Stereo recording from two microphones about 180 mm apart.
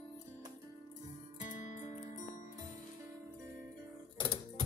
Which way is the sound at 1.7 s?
40° left (ahead or behind).